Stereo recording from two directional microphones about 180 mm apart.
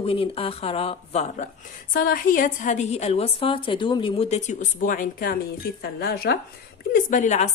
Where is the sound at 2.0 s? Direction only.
50° left (ahead or behind).